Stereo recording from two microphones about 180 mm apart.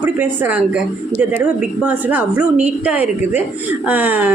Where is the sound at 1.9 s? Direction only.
10° right (ahead or behind).